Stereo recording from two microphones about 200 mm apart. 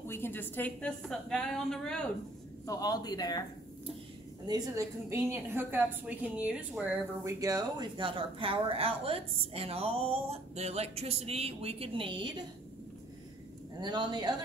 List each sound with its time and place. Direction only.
0.0 s a woman's voice: 10° left (ahead or behind)
2.6 s speech: 15° left (ahead or behind)
4.5 s a woman's voice: 15° right (ahead or behind)
13.7 s a woman's voice: 20° right (ahead or behind)